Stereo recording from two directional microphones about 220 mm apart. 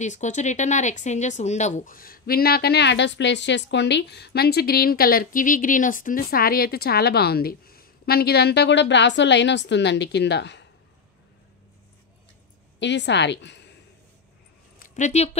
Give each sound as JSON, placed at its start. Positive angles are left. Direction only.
{"t": 0.0, "sound": "speech", "side_deg": 35}
{"t": 12.7, "sound": "speech", "side_deg": 55}
{"t": 14.8, "sound": "speech", "side_deg": 35}